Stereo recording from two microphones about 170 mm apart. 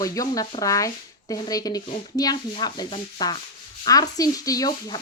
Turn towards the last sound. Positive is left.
turn(degrees=20)  # may be behind; listen again after turning